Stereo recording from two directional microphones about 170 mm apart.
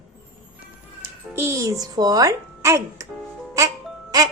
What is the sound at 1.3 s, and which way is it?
A child's voice, 15° right (ahead or behind).